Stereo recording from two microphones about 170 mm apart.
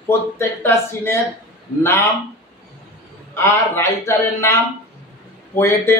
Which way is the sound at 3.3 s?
15° left (ahead or behind).